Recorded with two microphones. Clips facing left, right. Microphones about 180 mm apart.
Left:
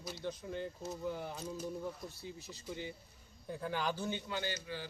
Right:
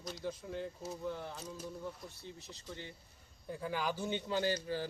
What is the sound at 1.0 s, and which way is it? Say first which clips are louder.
Speech: left 1 dB; 5° left (ahead or behind).